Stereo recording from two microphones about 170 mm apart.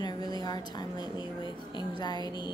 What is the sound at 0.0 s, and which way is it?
A woman's voice, 25° left (ahead or behind).